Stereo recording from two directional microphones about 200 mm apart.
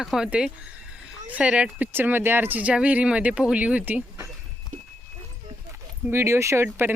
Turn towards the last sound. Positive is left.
turn(degrees=-10)  # may be behind; listen again after turning